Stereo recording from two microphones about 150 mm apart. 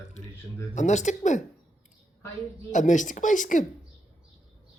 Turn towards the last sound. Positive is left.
turn(degrees=60)  # may be behind; listen again after turning